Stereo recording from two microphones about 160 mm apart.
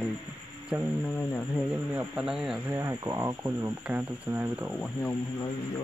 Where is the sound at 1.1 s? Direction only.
10° left (ahead or behind).